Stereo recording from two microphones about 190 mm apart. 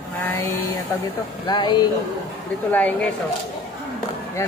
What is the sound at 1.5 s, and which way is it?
Speech, 25° left (ahead or behind).